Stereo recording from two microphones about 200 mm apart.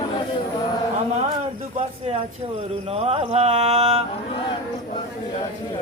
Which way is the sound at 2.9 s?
30° right (ahead or behind).